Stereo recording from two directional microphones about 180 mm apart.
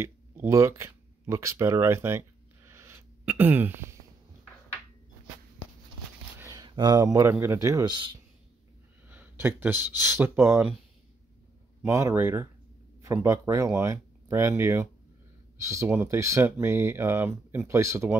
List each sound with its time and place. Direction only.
0.0 s a sound: 15° right (ahead or behind)
6.4 s speech: 20° right (ahead or behind)
9.1 s speech: 10° right (ahead or behind)
11.8 s speech: 15° right (ahead or behind)